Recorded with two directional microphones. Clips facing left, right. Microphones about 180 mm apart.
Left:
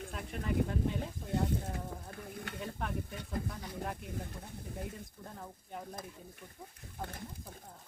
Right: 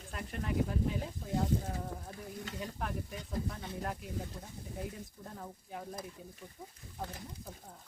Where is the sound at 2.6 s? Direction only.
Centre (ahead or behind).